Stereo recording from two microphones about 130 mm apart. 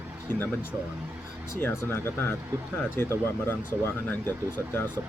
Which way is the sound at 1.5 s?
20° left (ahead or behind).